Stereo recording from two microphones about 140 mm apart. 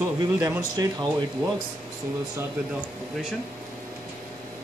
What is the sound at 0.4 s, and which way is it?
Speech, 25° right (ahead or behind).